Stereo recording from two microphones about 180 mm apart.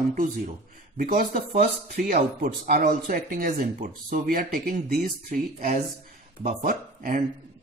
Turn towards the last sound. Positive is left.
turn(degrees=-50)  # may be behind; listen again after turning